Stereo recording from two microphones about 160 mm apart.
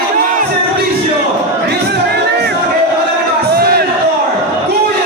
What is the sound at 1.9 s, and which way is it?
Music, 90° right.